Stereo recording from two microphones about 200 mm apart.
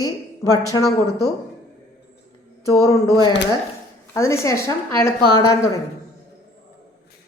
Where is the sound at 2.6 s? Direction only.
15° left (ahead or behind).